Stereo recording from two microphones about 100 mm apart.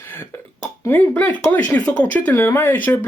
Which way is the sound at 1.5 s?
15° left (ahead or behind).